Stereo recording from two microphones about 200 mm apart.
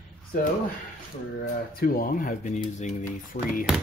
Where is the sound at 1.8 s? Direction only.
45° left (ahead or behind).